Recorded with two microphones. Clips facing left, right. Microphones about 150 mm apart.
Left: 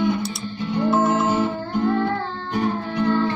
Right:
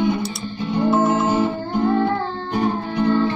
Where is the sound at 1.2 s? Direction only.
20° right (ahead or behind).